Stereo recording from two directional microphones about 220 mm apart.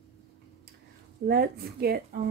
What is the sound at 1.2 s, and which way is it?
Speech, 45° right (ahead or behind).